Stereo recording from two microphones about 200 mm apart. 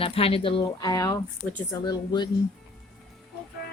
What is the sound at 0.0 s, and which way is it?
Speech, 30° left (ahead or behind).